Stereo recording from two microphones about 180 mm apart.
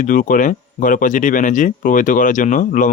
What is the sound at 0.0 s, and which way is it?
Speech, 50° left (ahead or behind).